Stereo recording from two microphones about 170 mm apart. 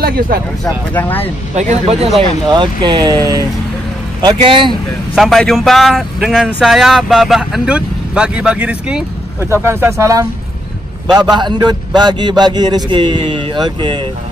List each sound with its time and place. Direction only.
0.0 s speech: 60° right (ahead or behind)
0.9 s speech: 10° left (ahead or behind)
1.5 s speech: 45° right (ahead or behind)
2.1 s speech: 25° right (ahead or behind)
5.1 s speech: centre (ahead or behind); by 14.0 s 25° right (ahead or behind)